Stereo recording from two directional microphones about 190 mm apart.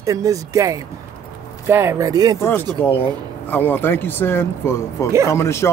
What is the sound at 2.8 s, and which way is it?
Speech, 10° left (ahead or behind).